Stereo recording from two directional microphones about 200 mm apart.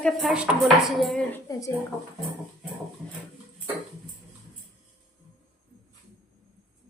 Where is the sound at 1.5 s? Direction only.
15° left (ahead or behind).